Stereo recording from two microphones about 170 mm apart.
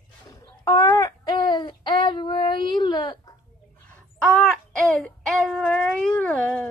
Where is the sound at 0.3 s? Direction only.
20° left (ahead or behind).